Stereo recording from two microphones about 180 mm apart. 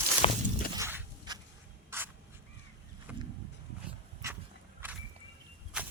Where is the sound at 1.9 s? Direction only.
15° right (ahead or behind).